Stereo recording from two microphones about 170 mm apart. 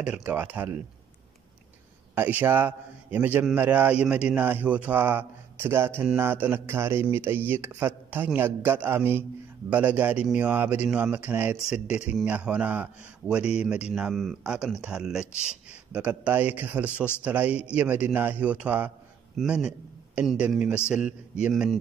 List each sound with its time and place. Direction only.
0.0 s a man's voice: 10° right (ahead or behind)
2.1 s a man's voice: 10° right (ahead or behind)